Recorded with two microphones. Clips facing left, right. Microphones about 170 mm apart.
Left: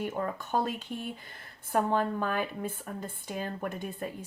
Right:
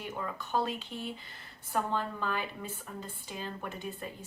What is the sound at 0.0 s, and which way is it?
Speech, 50° left (ahead or behind).